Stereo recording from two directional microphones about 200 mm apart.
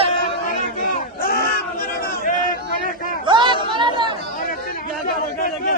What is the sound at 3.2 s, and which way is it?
Chatter, 25° right (ahead or behind).